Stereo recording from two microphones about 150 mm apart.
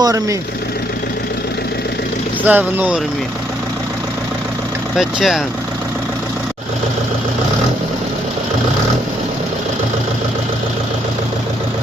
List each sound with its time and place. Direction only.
0.0 s speech: 20° right (ahead or behind)
2.4 s speech: 10° right (ahead or behind)
4.9 s speech: centre (ahead or behind)